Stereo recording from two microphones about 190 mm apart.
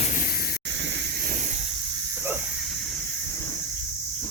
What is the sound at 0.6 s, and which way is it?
Hiss, 70° right (ahead or behind).